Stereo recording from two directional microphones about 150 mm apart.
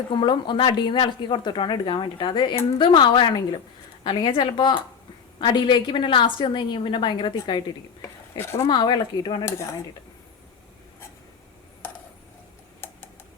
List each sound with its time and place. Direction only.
0.1 s a woman's voice: 30° left (ahead or behind)
8.0 s a sound: 20° left (ahead or behind)
8.6 s speech: 30° left (ahead or behind)
9.5 s speech: 20° left (ahead or behind)